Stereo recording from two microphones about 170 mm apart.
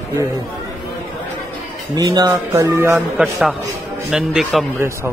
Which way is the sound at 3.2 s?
Centre (ahead or behind).